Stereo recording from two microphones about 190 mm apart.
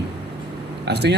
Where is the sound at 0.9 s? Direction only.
60° right (ahead or behind).